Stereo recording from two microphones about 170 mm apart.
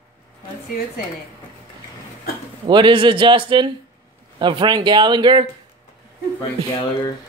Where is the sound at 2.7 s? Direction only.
30° right (ahead or behind).